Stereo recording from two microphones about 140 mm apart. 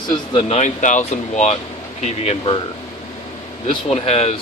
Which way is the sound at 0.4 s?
55° left (ahead or behind).